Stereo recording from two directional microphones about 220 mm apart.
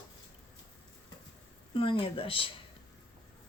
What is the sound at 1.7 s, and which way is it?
Speech, 25° left (ahead or behind).